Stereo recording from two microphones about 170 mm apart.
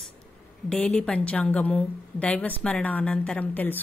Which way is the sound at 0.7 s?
5° left (ahead or behind).